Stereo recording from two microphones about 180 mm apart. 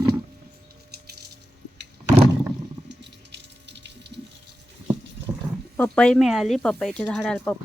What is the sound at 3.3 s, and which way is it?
Water, 75° right (ahead or behind).